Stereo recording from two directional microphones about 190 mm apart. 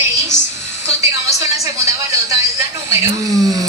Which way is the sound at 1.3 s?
15° right (ahead or behind).